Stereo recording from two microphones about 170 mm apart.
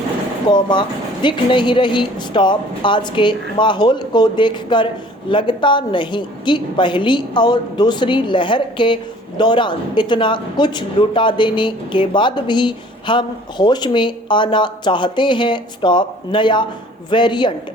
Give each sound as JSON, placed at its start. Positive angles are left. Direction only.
{"t": 0.5, "sound": "speech", "side_deg": 25}